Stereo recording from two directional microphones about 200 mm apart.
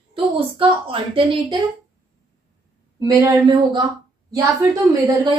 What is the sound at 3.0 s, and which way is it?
A woman's voice, 15° right (ahead or behind).